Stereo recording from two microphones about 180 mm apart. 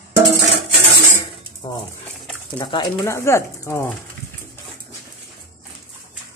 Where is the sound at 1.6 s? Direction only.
20° left (ahead or behind).